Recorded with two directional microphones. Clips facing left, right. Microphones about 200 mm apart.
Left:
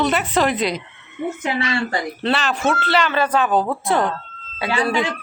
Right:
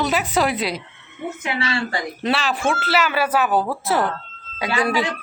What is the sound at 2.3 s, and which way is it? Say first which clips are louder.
Speech: left 1 dB; centre (ahead or behind).